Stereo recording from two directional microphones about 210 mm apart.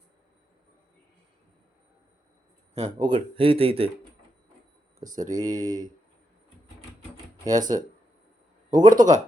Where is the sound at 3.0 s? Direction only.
25° right (ahead or behind).